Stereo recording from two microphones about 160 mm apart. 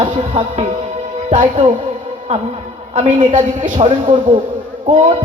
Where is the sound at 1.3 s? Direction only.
50° right (ahead or behind).